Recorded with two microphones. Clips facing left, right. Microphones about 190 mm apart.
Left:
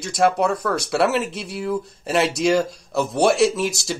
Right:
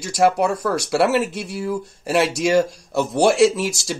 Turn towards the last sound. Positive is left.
turn(degrees=0)  # may be behind; listen again after turning